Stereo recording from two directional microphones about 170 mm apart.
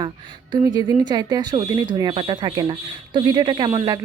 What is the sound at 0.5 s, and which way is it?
Speech, 25° right (ahead or behind).